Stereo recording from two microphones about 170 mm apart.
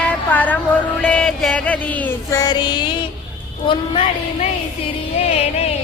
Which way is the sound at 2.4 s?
25° left (ahead or behind).